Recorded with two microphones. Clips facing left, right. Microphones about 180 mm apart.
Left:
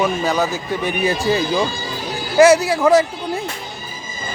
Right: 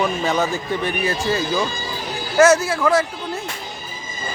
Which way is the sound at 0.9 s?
15° left (ahead or behind).